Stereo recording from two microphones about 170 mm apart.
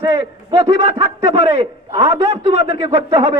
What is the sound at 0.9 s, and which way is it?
Speech, 35° right (ahead or behind).